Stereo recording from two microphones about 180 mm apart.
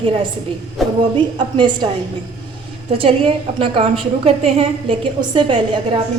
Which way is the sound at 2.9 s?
30° right (ahead or behind).